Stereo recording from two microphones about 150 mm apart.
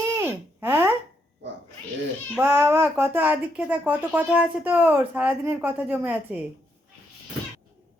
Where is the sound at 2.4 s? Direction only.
15° right (ahead or behind).